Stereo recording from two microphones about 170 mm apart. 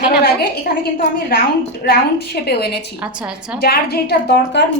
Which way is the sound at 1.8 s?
70° left (ahead or behind).